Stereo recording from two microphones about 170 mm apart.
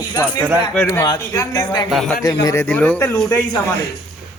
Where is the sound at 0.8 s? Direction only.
15° left (ahead or behind).